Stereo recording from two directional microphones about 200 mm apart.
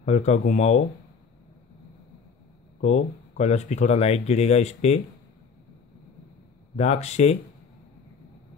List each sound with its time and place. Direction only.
0.0 s speech: 35° left (ahead or behind)
2.8 s speech: 35° left (ahead or behind)
6.8 s speech: 35° left (ahead or behind)